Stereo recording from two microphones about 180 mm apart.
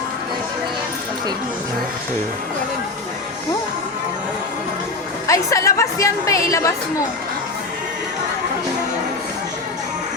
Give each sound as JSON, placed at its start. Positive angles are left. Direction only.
{"t": 5.3, "sound": "a woman's voice", "side_deg": 15}